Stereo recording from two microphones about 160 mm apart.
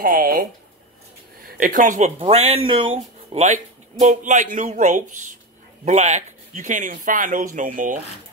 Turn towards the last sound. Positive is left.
turn(degrees=-55)  # may be behind; listen again after turning